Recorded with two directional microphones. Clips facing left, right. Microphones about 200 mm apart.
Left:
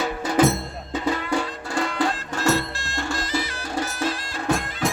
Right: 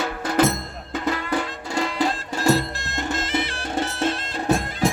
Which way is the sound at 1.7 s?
Centre (ahead or behind).